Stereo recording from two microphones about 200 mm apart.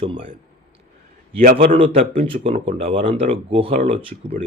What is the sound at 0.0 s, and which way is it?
Speech, 25° right (ahead or behind).